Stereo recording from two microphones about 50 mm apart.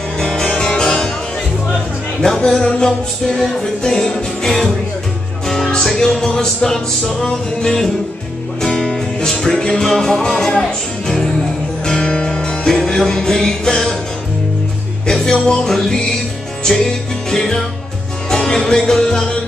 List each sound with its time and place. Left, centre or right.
0.2 s music: centre
2.2 s music: centre
15.0 s music: centre